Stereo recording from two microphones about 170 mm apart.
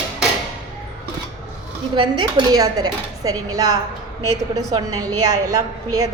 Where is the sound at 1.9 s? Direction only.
25° right (ahead or behind).